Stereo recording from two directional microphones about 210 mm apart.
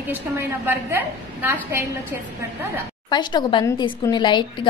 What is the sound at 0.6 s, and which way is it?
A woman's voice, 10° right (ahead or behind).